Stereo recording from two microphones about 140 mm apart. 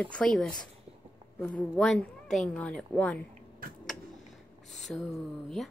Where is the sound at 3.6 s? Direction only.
90° right.